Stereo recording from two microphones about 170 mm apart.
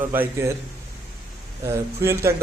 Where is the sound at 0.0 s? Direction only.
15° right (ahead or behind).